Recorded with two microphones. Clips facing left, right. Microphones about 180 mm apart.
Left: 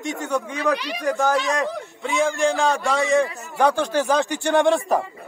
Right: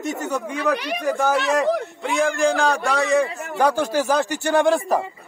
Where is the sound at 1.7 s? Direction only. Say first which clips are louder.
Right 7 dB; 70° right (ahead or behind).